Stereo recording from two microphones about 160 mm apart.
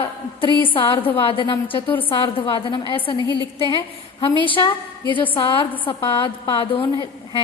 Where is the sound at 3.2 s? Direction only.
25° right (ahead or behind).